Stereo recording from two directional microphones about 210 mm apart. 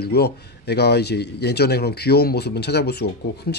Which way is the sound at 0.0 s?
50° left (ahead or behind).